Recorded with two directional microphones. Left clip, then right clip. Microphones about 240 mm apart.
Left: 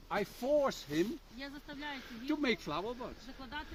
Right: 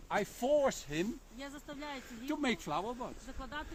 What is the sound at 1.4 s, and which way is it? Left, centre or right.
Speech, centre.